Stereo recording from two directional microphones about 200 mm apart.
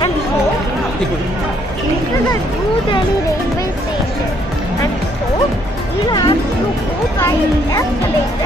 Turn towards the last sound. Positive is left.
turn(degrees=15)  # may be behind; listen again after turning